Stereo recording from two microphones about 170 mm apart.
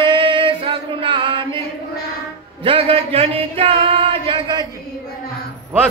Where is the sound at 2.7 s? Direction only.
35° right (ahead or behind).